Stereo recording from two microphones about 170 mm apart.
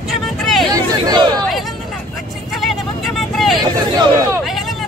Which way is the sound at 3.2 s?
Centre (ahead or behind).